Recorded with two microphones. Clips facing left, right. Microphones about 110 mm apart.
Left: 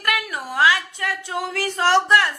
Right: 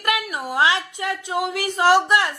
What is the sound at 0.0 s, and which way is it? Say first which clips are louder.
A woman's voice: right 1 dB; 20° right (ahead or behind).